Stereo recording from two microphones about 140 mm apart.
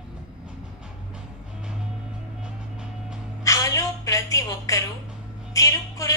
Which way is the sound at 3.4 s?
25° left (ahead or behind).